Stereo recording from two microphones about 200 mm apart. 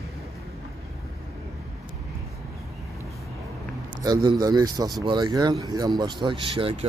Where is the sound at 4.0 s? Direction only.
20° right (ahead or behind).